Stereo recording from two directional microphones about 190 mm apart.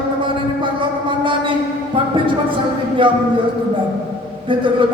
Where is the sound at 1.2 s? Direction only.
25° right (ahead or behind).